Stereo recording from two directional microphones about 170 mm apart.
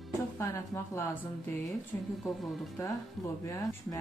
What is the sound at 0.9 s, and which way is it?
Speech, 15° left (ahead or behind).